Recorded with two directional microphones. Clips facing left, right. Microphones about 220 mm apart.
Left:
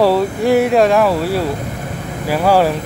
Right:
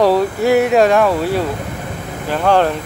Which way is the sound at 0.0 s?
Centre (ahead or behind).